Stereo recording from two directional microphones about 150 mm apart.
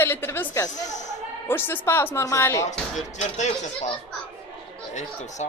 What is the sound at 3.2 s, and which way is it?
Speech, 50° left (ahead or behind).